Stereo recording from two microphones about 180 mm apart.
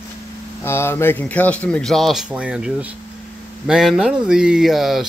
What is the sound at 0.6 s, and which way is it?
Speech, 15° left (ahead or behind).